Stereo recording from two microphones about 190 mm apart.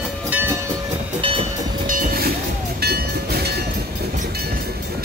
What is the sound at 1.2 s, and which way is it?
Train, 30° right (ahead or behind).